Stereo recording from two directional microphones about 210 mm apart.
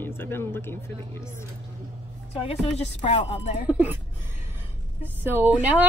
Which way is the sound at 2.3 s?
30° left (ahead or behind).